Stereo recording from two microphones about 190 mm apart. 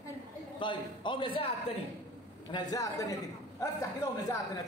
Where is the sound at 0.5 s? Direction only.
25° left (ahead or behind).